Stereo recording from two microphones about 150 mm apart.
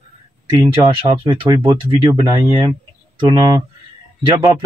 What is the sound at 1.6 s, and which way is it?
Speech, 20° right (ahead or behind).